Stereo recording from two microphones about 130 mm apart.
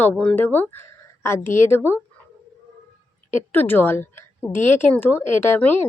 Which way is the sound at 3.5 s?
15° left (ahead or behind).